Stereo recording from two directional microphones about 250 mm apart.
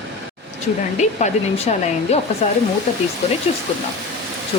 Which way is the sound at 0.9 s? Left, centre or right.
Left.